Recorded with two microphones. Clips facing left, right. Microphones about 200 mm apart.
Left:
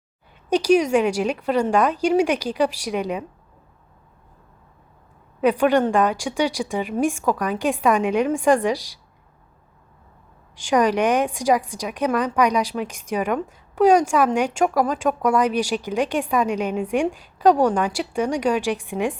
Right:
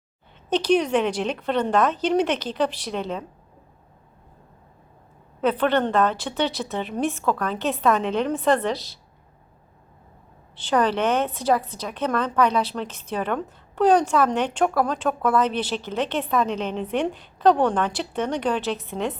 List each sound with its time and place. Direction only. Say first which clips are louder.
0.5 s speech: left 3 dB; 10° left (ahead or behind)
5.4 s speech: left 3 dB; 10° left (ahead or behind)
10.5 s speech: left 3 dB; 10° left (ahead or behind)